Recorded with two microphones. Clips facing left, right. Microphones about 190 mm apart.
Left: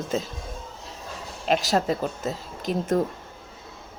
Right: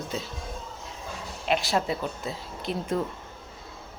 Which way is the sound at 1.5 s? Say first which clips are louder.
Left 3 dB; 40° left (ahead or behind).